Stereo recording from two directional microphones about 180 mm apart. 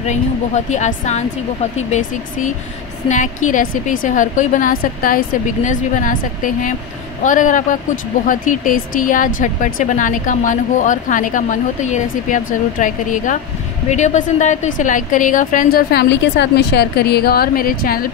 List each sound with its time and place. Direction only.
0.0 s speech: 40° left (ahead or behind)